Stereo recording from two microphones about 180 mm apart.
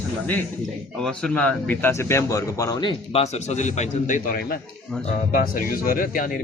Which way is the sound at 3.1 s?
35° left (ahead or behind).